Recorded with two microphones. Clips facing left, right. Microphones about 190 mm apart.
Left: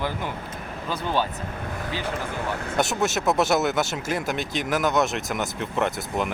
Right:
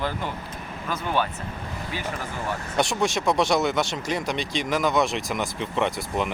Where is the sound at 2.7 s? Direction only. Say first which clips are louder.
Even; 5° left (ahead or behind).